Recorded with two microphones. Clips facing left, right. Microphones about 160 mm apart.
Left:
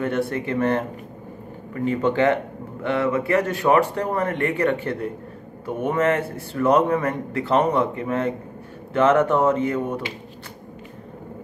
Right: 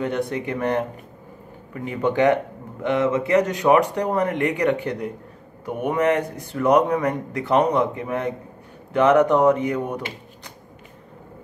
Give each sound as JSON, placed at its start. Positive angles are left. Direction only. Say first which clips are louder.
{"t": 0.0, "sound": "a man's voice", "louder": "left 1 dB", "side_deg": -15}